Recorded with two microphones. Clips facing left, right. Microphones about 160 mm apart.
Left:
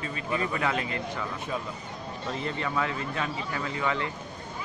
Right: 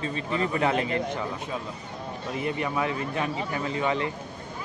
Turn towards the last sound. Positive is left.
turn(degrees=-20)  # may be behind; listen again after turning